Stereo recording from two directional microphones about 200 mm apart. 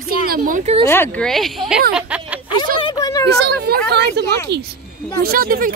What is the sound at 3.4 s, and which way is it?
Speech, 55° right (ahead or behind).